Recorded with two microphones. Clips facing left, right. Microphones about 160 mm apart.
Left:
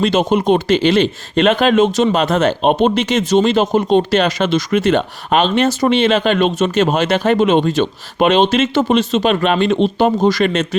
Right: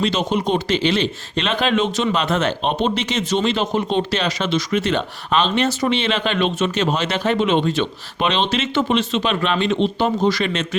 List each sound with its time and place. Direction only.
0.0 s speech: 50° left (ahead or behind)